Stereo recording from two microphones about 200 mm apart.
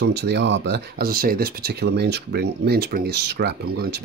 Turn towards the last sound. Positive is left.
turn(degrees=-55)  # may be behind; listen again after turning